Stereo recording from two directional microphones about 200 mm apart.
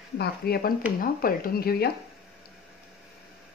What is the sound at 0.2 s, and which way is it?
Speech, 50° left (ahead or behind).